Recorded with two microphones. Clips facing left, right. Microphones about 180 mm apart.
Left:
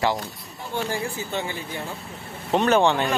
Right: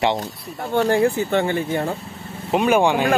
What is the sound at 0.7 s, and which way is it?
Speech, 65° right (ahead or behind).